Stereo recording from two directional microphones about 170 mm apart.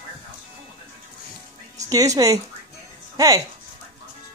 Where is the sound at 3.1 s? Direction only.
20° right (ahead or behind).